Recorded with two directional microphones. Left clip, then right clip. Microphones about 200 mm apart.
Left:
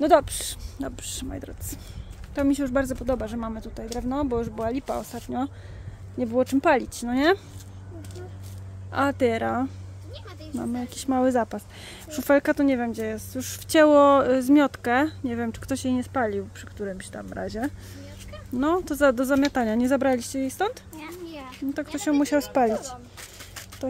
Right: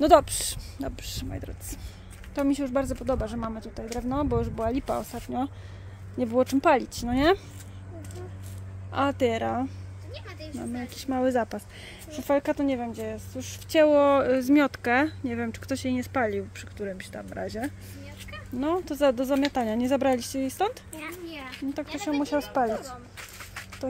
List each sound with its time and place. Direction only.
0.0 s a woman's voice: centre (ahead or behind)
8.9 s a woman's voice: 10° left (ahead or behind)
12.1 s a woman's voice: 30° left (ahead or behind); by 16.0 s 10° left (ahead or behind)
16.1 s a woman's voice: centre (ahead or behind)
21.4 s a sound: 10° right (ahead or behind)
22.2 s a woman's voice: 30° left (ahead or behind)